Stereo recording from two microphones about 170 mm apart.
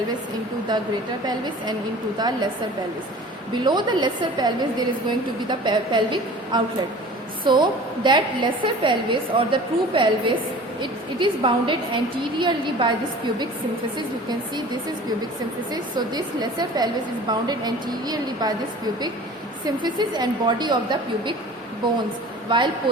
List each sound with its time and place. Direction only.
0.7 s a woman's voice: 25° right (ahead or behind)
3.5 s a woman's voice: 25° right (ahead or behind)
15.7 s a woman's voice: 25° right (ahead or behind)
19.6 s a woman's voice: 25° right (ahead or behind)
22.4 s a woman's voice: 30° right (ahead or behind)